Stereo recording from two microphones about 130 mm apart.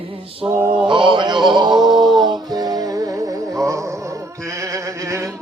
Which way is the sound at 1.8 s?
35° right (ahead or behind).